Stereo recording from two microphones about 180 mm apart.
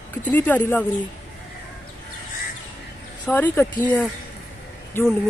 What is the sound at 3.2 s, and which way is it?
Speech, 10° left (ahead or behind).